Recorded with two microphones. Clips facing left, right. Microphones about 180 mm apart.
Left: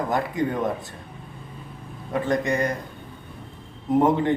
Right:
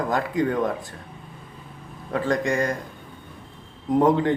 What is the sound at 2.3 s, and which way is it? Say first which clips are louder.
Speech: even; 20° left (ahead or behind).